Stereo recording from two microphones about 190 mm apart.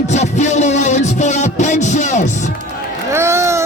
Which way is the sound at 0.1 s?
40° left (ahead or behind).